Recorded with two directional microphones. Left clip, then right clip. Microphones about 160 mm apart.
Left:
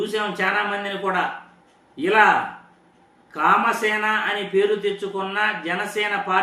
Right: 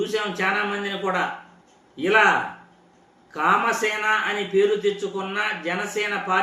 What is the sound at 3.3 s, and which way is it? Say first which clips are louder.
Speech: left 2 dB; centre (ahead or behind).